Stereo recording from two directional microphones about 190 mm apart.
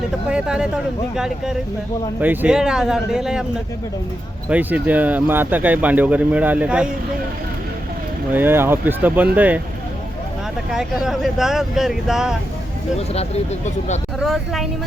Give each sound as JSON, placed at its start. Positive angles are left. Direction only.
{"t": 0.3, "sound": "speech", "side_deg": -5}
{"t": 4.4, "sound": "speech", "side_deg": -10}
{"t": 8.3, "sound": "speech", "side_deg": -10}
{"t": 10.7, "sound": "speech", "side_deg": 0}
{"t": 13.0, "sound": "speech", "side_deg": 35}
{"t": 14.2, "sound": "speech", "side_deg": 0}